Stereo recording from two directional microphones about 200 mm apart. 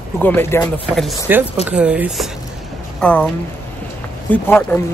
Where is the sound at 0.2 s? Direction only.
10° left (ahead or behind).